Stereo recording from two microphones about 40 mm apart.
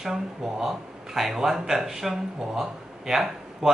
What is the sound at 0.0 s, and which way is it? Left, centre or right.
Speech, centre.